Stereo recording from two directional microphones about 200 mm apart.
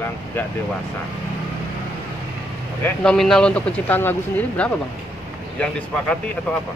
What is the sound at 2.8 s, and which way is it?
Speech, 5° left (ahead or behind).